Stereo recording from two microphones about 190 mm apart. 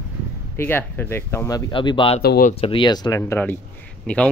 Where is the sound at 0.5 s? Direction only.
10° left (ahead or behind); by 2.2 s 25° left (ahead or behind).